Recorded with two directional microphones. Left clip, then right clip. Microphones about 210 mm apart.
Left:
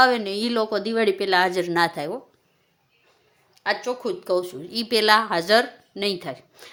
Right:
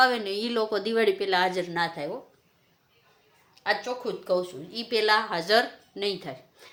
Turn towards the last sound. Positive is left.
turn(degrees=45)  # may be behind; listen again after turning